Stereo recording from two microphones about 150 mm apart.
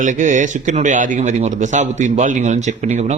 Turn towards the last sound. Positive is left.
turn(degrees=-50)  # may be behind; listen again after turning